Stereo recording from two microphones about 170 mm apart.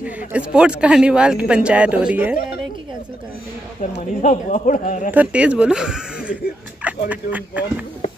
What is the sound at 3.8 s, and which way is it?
Speech, 50° left (ahead or behind).